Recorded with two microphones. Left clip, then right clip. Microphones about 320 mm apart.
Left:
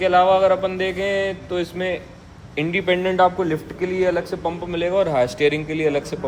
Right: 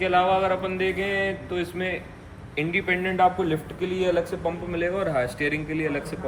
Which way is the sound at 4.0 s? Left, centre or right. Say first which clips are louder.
Left 3 dB; left.